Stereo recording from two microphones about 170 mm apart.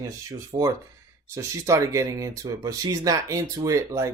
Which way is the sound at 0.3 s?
20° right (ahead or behind).